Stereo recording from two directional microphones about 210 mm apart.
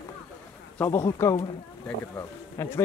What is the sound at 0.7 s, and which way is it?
A man's voice, 10° left (ahead or behind).